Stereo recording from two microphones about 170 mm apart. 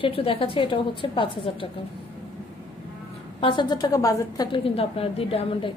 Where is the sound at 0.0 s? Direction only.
35° left (ahead or behind).